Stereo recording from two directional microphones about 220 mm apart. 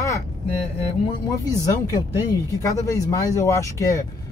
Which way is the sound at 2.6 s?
15° left (ahead or behind).